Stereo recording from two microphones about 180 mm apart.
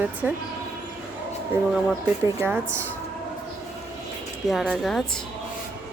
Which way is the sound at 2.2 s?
15° right (ahead or behind).